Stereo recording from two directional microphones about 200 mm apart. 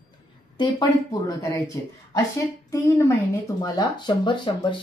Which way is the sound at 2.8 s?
10° left (ahead or behind).